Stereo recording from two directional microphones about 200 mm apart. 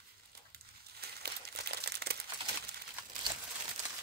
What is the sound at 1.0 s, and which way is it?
Crumpling, 55° right (ahead or behind).